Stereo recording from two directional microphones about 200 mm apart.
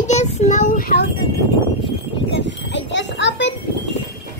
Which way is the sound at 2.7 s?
65° left (ahead or behind).